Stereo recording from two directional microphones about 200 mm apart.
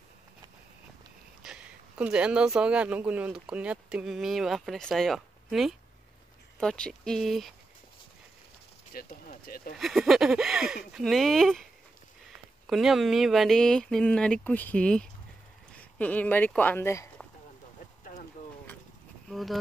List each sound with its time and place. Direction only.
1.4 s speech: 5° right (ahead or behind)
8.9 s speech: 45° left (ahead or behind)
9.8 s speech: centre (ahead or behind)
12.6 s speech: centre (ahead or behind); by 17.1 s 15° left (ahead or behind)
19.2 s speech: centre (ahead or behind)